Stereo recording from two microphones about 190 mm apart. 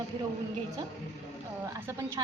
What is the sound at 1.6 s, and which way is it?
Speech, 15° right (ahead or behind).